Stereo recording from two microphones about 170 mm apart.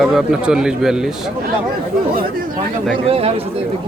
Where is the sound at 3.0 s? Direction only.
35° right (ahead or behind).